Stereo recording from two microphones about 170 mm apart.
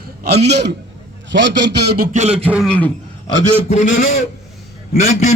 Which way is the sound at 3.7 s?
45° left (ahead or behind).